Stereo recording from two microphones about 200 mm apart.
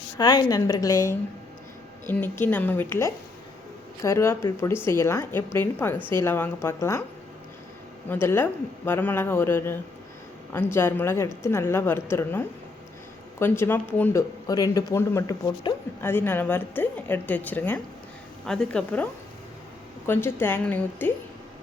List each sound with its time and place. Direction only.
0.2 s speech: 20° left (ahead or behind)
8.1 s a woman's voice: 10° left (ahead or behind)
20.1 s speech: 10° left (ahead or behind)